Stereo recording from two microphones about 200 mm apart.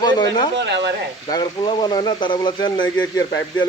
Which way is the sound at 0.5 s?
60° right (ahead or behind).